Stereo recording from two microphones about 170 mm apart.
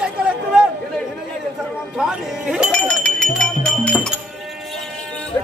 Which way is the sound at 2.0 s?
5° right (ahead or behind).